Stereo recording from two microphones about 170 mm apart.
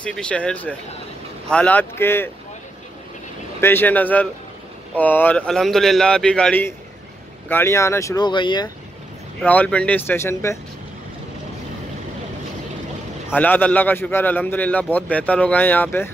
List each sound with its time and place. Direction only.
0.0 s a man's voice: 5° left (ahead or behind)
3.6 s a man's voice: 10° left (ahead or behind); by 8.6 s 25° left (ahead or behind)
9.5 s a man's voice: 10° left (ahead or behind)
13.3 s a man's voice: 10° left (ahead or behind)